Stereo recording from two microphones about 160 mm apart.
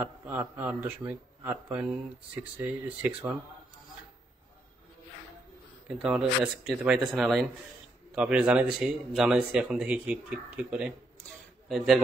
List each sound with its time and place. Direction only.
0.0 s speech: 10° right (ahead or behind)
5.9 s speech: 5° right (ahead or behind)